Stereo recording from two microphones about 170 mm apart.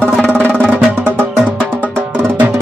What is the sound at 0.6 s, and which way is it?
Music, 10° right (ahead or behind).